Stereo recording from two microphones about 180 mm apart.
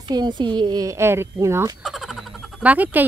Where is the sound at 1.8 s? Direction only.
Centre (ahead or behind).